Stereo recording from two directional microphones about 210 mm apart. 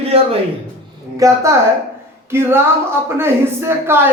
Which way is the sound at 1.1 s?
15° right (ahead or behind).